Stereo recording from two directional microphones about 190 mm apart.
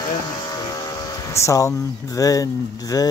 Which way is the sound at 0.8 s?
15° left (ahead or behind).